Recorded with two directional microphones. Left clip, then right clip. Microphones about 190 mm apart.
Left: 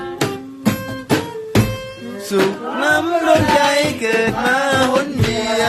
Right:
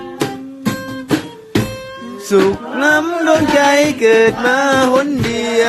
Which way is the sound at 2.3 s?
45° right (ahead or behind).